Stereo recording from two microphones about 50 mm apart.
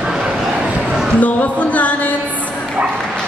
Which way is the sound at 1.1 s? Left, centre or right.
Left.